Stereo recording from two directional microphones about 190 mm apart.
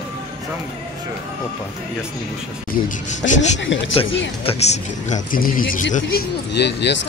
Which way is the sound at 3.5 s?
80° left.